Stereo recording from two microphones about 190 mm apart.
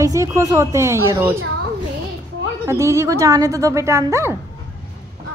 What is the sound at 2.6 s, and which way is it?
A woman's voice, 15° right (ahead or behind).